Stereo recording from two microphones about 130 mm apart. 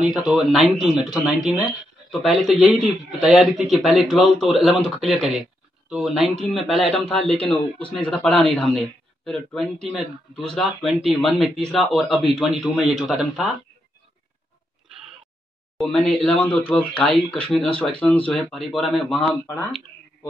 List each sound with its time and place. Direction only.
0.1 s speech: centre (ahead or behind)
14.9 s a sound: centre (ahead or behind)
15.8 s speech: centre (ahead or behind)
17.0 s speech: 45° left (ahead or behind)
17.4 s speech: 5° left (ahead or behind)